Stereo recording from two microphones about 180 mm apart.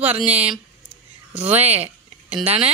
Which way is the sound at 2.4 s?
35° right (ahead or behind).